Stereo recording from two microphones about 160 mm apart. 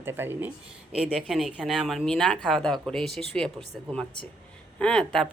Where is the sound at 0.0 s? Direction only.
15° right (ahead or behind).